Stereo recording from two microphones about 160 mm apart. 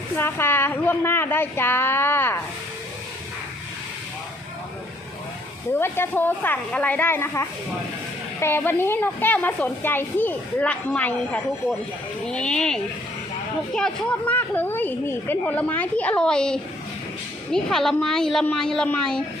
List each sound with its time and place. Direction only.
0.2 s a woman's voice: 15° left (ahead or behind)
5.8 s a woman's voice: 15° left (ahead or behind)